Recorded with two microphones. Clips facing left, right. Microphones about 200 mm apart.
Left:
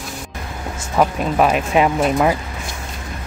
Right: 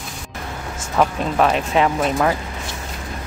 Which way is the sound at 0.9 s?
10° left (ahead or behind).